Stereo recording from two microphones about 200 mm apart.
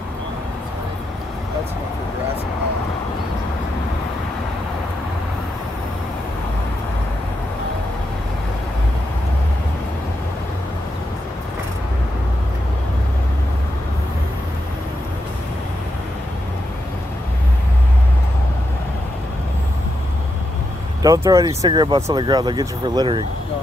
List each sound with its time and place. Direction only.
21.0 s speech: 15° right (ahead or behind)